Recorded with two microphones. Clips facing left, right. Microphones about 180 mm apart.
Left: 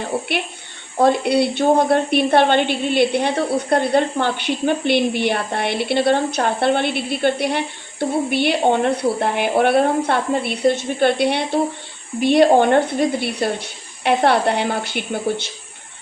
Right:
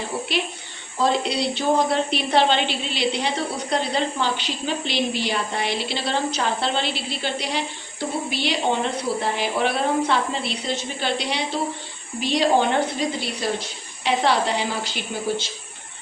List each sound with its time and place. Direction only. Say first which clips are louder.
0.9 s a woman's voice: left 6 dB; 60° left (ahead or behind)